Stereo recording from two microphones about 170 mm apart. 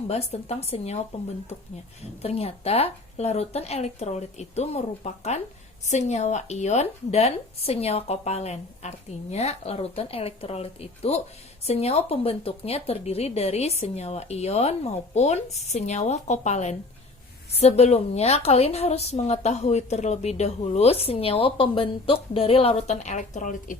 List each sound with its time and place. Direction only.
0.1 s a woman's voice: 35° left (ahead or behind)
2.2 s a woman's voice: 35° left (ahead or behind)